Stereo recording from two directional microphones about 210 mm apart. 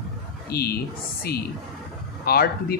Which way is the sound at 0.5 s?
45° left (ahead or behind).